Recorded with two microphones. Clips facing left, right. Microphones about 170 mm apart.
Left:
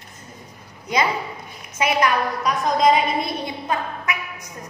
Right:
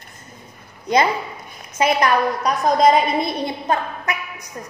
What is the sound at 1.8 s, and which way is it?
A woman's voice, 40° right (ahead or behind).